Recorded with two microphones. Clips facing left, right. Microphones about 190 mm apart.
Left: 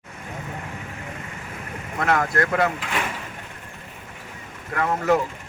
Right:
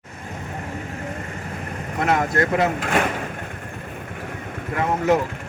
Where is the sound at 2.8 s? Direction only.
50° right (ahead or behind).